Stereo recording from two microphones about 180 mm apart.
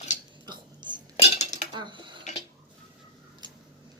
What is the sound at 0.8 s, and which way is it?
Cutlery, 25° right (ahead or behind).